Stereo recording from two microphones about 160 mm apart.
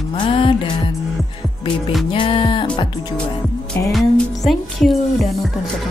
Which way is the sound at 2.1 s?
30° left (ahead or behind).